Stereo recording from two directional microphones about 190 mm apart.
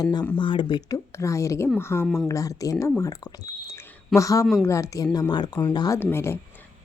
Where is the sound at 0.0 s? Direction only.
20° left (ahead or behind).